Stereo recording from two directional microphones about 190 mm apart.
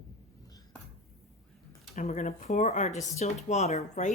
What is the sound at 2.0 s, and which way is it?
Speech, 40° left (ahead or behind).